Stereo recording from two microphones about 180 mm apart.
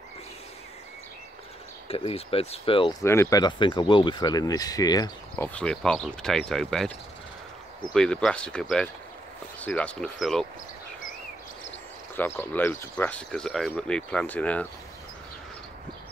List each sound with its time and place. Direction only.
1.9 s speech: 35° left (ahead or behind)
3.0 s speech: 15° left (ahead or behind)
5.3 s speech: 5° left (ahead or behind)
7.9 s speech: 5° left (ahead or behind)
12.4 s speech: 10° left (ahead or behind)